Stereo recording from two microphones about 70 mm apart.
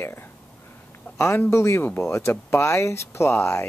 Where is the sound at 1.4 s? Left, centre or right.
Left.